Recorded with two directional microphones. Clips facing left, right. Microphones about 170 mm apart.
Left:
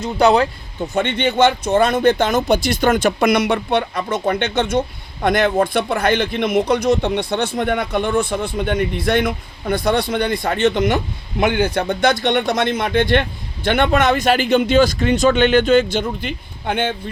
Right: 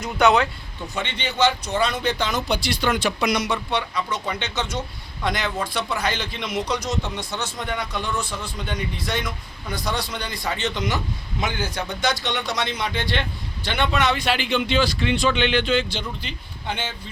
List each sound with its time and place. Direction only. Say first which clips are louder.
0.0 s speech: left 4 dB; 30° left (ahead or behind)
0.8 s speech: left 10 dB; 50° left (ahead or behind)